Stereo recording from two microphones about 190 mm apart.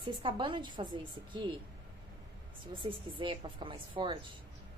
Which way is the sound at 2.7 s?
25° right (ahead or behind).